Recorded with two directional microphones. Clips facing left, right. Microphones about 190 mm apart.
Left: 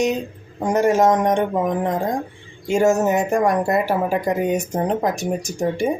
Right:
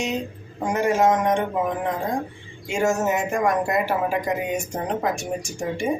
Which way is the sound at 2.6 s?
35° left (ahead or behind).